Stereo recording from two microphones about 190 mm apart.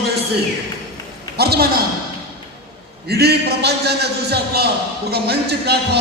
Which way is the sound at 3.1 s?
55° right (ahead or behind).